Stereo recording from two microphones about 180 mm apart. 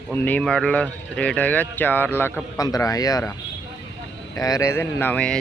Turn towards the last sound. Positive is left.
turn(degrees=10)  # may be behind; listen again after turning